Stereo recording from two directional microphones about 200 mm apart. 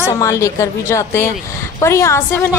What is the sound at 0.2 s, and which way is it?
A woman's voice, 15° left (ahead or behind).